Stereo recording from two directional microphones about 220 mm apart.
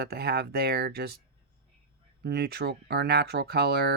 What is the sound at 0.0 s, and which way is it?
Speech, 45° right (ahead or behind).